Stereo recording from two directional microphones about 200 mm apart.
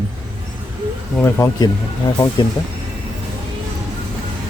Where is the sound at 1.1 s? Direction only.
15° left (ahead or behind).